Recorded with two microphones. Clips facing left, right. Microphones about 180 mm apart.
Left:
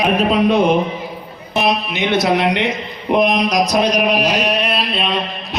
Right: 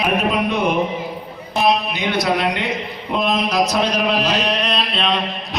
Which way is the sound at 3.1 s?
15° left (ahead or behind).